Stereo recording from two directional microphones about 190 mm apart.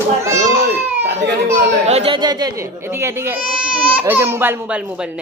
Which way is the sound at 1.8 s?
30° right (ahead or behind).